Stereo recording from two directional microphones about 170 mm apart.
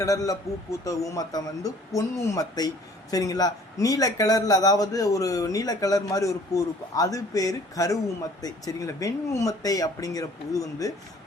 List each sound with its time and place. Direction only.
0.0 s speech: 20° left (ahead or behind)